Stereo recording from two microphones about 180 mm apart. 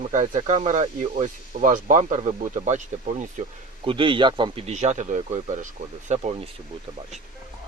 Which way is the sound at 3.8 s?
25° right (ahead or behind).